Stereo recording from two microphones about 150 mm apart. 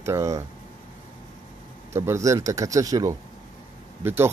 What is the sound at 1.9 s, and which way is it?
Speech, 20° right (ahead or behind).